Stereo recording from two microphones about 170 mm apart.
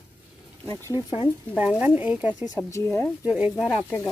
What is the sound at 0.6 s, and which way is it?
Speech, 20° left (ahead or behind).